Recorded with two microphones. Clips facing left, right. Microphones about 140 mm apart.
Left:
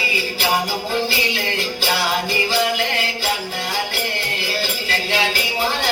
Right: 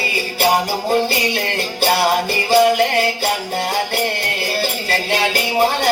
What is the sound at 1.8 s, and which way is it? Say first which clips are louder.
Music: right 7 dB; 60° right (ahead or behind).